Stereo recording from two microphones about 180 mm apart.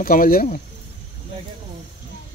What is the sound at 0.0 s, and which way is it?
Speech, 50° left (ahead or behind).